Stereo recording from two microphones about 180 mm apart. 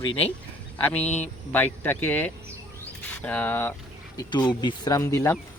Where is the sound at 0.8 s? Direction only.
10° left (ahead or behind).